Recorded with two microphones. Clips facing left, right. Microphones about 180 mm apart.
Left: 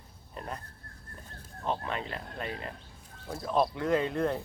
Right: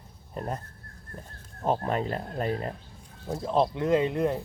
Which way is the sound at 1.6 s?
40° right (ahead or behind).